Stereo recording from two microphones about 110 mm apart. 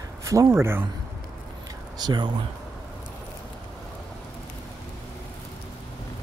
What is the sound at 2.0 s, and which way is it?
Speech, 40° right (ahead or behind).